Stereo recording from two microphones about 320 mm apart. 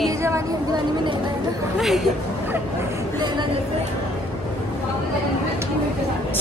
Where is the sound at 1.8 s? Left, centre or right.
Centre.